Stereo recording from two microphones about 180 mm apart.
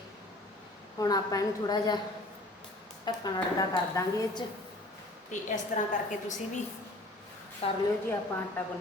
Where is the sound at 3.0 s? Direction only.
20° left (ahead or behind).